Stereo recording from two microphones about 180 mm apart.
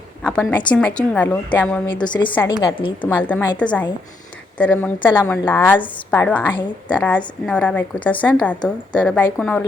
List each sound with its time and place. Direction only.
0.3 s a woman's voice: 5° left (ahead or behind)
2.0 s a woman's voice: 25° left (ahead or behind)
3.0 s a woman's voice: 10° left (ahead or behind)